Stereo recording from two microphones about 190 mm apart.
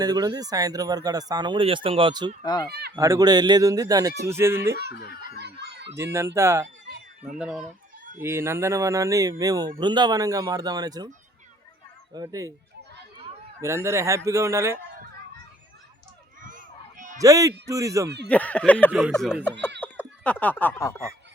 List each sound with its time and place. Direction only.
0.0 s speech: 20° right (ahead or behind)
2.4 s speech: 20° left (ahead or behind)
2.9 s speech: 15° right (ahead or behind)
5.4 s chicken: 65° right (ahead or behind)
6.0 s speech: 15° right (ahead or behind)
7.3 s speech: 5° right (ahead or behind); by 11.1 s 20° right (ahead or behind)
12.1 s speech: 20° right (ahead or behind)
13.6 s speech: 15° right (ahead or behind)
16.4 s a sound: 45° right (ahead or behind)
17.2 s speech: 15° right (ahead or behind)
18.3 s speech: 5° left (ahead or behind)
18.9 s speech: 5° right (ahead or behind)
19.8 s a sound: 10° left (ahead or behind)